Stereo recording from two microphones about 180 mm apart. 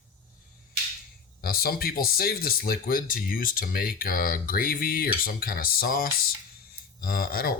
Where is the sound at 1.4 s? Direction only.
55° left (ahead or behind).